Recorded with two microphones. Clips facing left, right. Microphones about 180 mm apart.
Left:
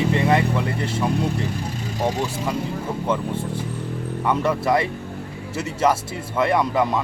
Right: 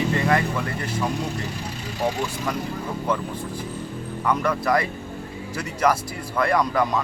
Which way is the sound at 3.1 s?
25° left (ahead or behind).